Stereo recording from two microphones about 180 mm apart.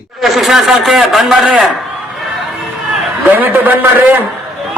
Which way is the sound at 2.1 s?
Centre (ahead or behind).